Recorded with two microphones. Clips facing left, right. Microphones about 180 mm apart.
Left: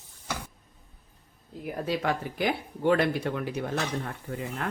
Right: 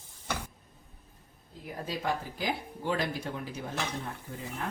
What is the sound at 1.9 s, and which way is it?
Speech, 70° left (ahead or behind).